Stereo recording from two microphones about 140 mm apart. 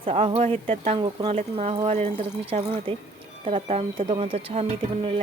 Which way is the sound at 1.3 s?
50° right (ahead or behind).